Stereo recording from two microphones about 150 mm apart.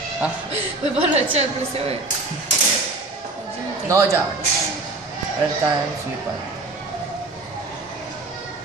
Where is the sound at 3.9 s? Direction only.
20° right (ahead or behind).